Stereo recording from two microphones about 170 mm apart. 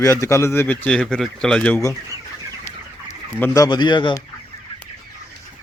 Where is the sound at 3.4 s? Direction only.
20° left (ahead or behind).